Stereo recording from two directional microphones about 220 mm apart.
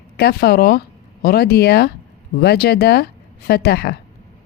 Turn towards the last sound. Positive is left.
turn(degrees=45)  # may be behind; listen again after turning